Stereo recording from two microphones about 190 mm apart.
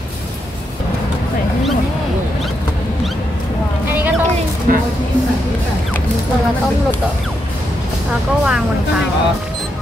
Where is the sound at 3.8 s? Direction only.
10° right (ahead or behind).